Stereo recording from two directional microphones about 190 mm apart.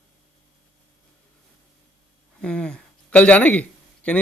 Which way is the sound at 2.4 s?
5° left (ahead or behind).